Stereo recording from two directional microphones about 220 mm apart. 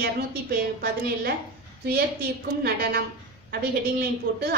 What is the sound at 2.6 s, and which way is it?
Speech, 45° right (ahead or behind).